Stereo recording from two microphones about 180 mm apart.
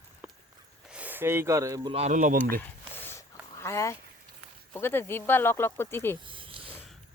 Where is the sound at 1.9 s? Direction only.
40° right (ahead or behind).